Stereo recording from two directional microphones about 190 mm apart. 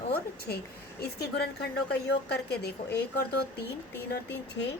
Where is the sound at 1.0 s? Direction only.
60° left (ahead or behind).